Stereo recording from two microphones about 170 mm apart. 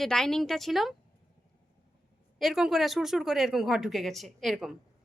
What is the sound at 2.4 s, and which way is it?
A woman's voice, centre (ahead or behind).